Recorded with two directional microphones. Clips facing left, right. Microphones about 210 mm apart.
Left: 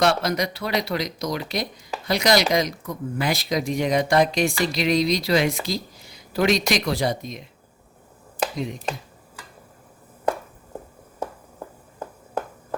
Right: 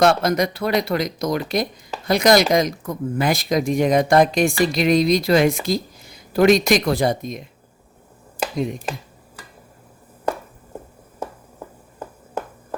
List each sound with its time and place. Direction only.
0.0 s speech: 50° right (ahead or behind)
8.5 s speech: 50° right (ahead or behind)